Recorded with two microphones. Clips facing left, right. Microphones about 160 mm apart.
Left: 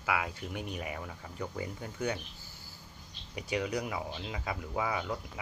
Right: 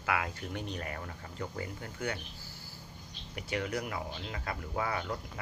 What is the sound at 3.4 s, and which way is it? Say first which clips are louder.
Speech: left 2 dB; 15° left (ahead or behind).